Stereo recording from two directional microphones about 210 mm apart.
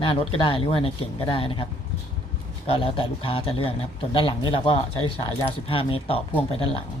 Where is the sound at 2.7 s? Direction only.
25° left (ahead or behind).